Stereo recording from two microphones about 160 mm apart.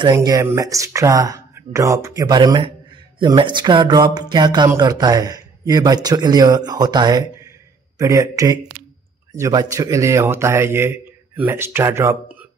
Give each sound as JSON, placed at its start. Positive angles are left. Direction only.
{"t": 0.0, "sound": "a man's voice", "side_deg": -25}